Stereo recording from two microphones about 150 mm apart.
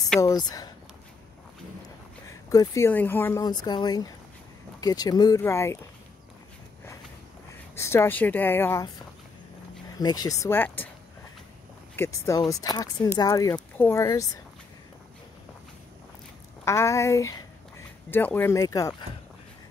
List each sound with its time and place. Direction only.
0.2 s speech: 25° left (ahead or behind)
2.2 s speech: 20° left (ahead or behind)
3.4 s speech: 30° left (ahead or behind)
7.7 s speech: 15° left (ahead or behind)
9.9 s speech: 25° left (ahead or behind)
11.9 s speech: 15° left (ahead or behind)
16.6 s speech: 20° left (ahead or behind)